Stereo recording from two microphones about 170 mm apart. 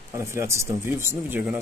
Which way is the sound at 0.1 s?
15° right (ahead or behind).